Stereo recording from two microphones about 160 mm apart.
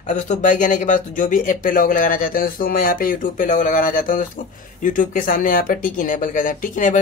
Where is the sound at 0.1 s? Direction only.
55° left (ahead or behind).